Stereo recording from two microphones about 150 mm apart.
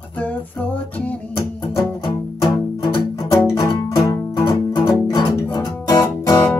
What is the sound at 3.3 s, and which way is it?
Music, 25° left (ahead or behind).